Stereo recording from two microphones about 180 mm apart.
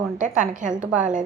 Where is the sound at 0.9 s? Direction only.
45° right (ahead or behind).